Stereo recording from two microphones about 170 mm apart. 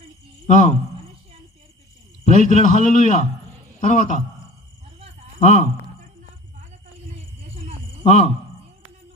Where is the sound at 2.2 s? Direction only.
45° left (ahead or behind).